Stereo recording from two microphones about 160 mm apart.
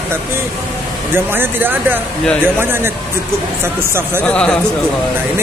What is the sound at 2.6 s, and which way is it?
Speech, 15° right (ahead or behind).